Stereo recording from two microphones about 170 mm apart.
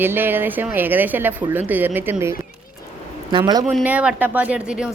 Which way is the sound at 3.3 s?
25° right (ahead or behind).